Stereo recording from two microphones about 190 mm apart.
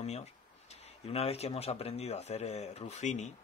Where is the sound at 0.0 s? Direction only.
35° left (ahead or behind).